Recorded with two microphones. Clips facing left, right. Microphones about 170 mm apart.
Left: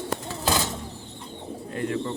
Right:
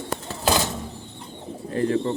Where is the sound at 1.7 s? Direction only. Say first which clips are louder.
Right 6 dB; 35° right (ahead or behind).